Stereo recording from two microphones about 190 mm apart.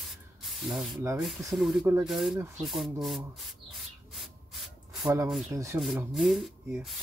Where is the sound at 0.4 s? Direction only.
Centre (ahead or behind).